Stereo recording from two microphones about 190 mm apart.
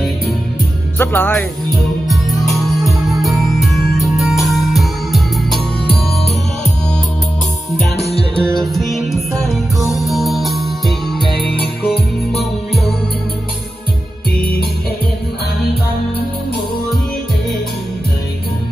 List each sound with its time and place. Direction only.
0.9 s speech: 10° left (ahead or behind)
2.0 s music: centre (ahead or behind)
8.0 s music: 30° left (ahead or behind)
8.5 s music: centre (ahead or behind)